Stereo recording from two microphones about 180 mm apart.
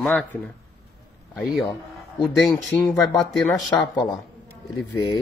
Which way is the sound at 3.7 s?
20° left (ahead or behind).